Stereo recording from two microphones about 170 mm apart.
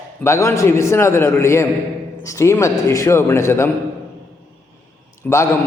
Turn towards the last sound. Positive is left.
turn(degrees=15)  # may be behind; listen again after turning